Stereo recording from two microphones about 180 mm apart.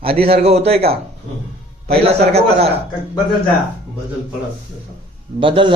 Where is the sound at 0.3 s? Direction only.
35° right (ahead or behind).